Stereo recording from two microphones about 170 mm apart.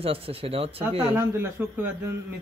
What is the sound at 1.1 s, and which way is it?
Speech, 15° right (ahead or behind).